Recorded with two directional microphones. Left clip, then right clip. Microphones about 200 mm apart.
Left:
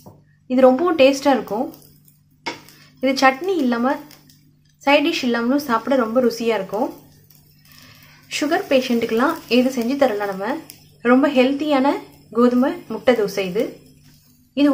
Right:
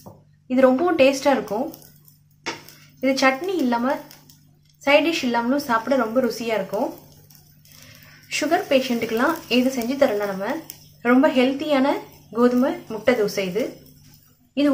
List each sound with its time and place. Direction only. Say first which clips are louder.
0.5 s a woman's voice: left 3 dB; 15° left (ahead or behind)
3.0 s speech: left 3 dB; 20° left (ahead or behind)
8.3 s speech: left 1 dB; 20° left (ahead or behind)